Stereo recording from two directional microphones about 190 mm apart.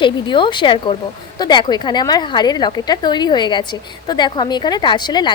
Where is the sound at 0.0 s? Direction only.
25° left (ahead or behind).